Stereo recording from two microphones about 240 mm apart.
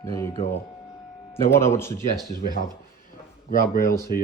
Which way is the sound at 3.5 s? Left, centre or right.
Left.